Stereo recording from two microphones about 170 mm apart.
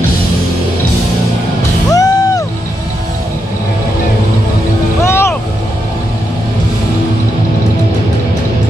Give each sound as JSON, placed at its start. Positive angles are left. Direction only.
{"t": 1.9, "sound": "music", "side_deg": 20}
{"t": 5.0, "sound": "music", "side_deg": 15}